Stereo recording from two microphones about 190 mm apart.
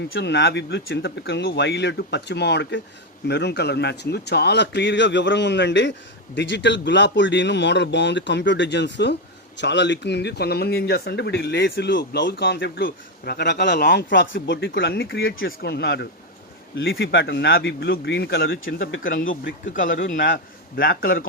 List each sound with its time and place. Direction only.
0.1 s speech: 65° left (ahead or behind)
14.8 s speech: 60° left (ahead or behind)
16.7 s a man's voice: 75° left (ahead or behind); by 21.2 s 50° left (ahead or behind)